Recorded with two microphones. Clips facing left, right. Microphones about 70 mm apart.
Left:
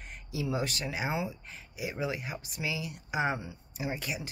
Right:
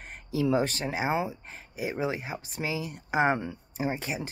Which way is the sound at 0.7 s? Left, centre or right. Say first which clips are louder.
Right 5 dB; right.